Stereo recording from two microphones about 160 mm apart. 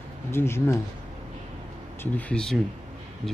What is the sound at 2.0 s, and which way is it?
Speech, 10° left (ahead or behind).